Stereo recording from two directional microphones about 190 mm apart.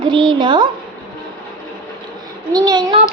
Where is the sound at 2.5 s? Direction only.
20° right (ahead or behind).